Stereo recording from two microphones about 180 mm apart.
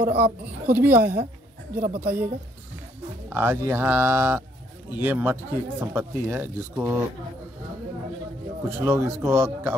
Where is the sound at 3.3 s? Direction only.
15° right (ahead or behind).